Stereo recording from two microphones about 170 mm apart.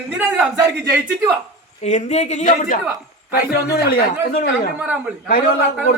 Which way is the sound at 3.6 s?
65° left (ahead or behind).